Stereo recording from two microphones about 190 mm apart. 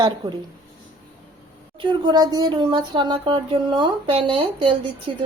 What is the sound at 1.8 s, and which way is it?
Speech, 25° right (ahead or behind).